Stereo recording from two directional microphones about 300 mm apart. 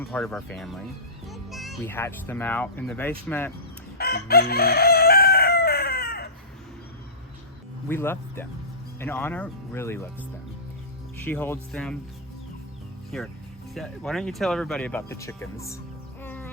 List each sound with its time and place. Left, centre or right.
0.1 s speech: centre
3.9 s chicken: left
7.9 s speech: centre
11.2 s speech: centre
13.1 s speech: centre
16.2 s music: centre